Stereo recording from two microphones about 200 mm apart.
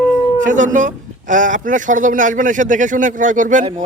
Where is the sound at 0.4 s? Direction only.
40° right (ahead or behind).